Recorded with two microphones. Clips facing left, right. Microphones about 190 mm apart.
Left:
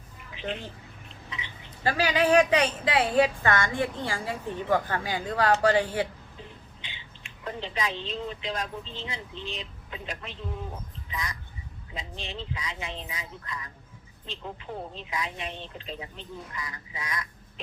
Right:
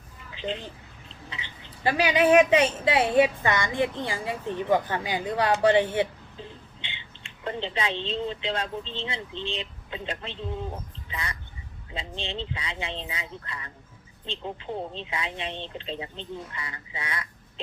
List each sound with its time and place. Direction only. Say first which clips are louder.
0.3 s speech: right 2 dB; 30° right (ahead or behind)
1.8 s a woman's voice: right 3 dB; 20° right (ahead or behind)